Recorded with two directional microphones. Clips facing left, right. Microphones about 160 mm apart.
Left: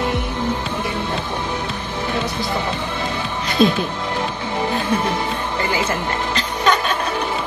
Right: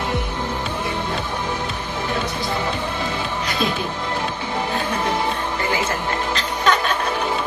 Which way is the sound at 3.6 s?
25° left (ahead or behind).